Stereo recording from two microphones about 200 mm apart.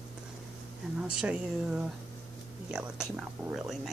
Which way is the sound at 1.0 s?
5° right (ahead or behind).